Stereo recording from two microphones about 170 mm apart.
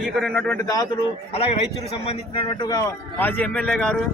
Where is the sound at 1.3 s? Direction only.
35° left (ahead or behind).